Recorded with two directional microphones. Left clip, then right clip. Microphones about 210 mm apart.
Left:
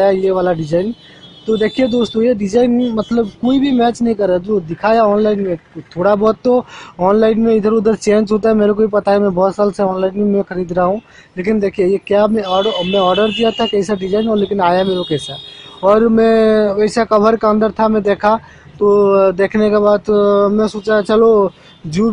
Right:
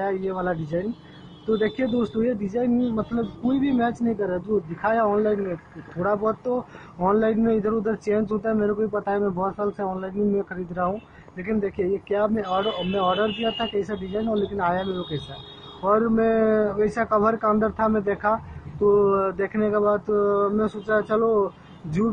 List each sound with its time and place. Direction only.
0.0 s a man's voice: 45° left (ahead or behind)